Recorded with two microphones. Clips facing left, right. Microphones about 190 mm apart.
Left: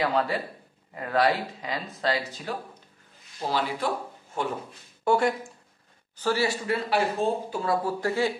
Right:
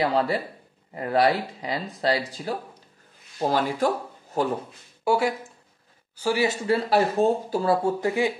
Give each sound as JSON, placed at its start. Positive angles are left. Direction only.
{"t": 0.0, "sound": "speech", "side_deg": -30}
{"t": 3.3, "sound": "speech", "side_deg": -45}
{"t": 5.0, "sound": "a woman's voice", "side_deg": -5}